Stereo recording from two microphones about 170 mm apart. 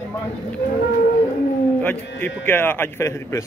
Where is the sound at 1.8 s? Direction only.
10° left (ahead or behind).